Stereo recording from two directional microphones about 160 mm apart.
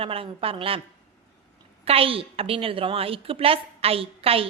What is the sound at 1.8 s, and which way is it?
A woman's voice, 35° right (ahead or behind).